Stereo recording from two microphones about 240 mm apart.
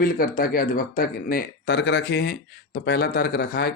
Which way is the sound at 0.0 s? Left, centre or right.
Left.